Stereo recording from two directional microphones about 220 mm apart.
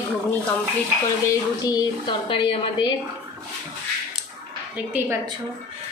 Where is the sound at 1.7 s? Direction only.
20° left (ahead or behind).